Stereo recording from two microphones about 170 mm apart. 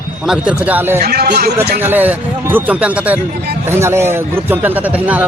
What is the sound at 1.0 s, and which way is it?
Speech, 70° right (ahead or behind).